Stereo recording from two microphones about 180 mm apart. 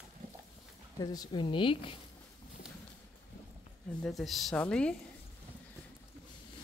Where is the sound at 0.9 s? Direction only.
20° left (ahead or behind).